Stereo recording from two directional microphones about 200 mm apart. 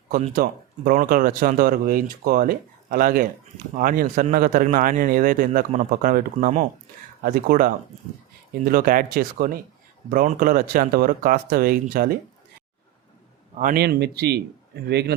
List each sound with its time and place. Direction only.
0.3 s speech: 45° right (ahead or behind)
13.6 s speech: 45° right (ahead or behind)